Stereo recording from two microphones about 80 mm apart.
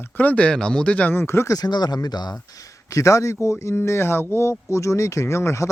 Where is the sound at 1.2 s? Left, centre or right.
Left.